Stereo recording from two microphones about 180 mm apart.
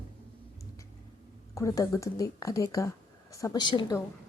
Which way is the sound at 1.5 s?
20° left (ahead or behind).